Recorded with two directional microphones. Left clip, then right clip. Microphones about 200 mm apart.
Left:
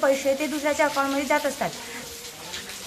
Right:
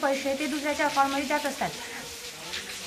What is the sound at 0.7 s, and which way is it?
A woman's voice, 45° left (ahead or behind).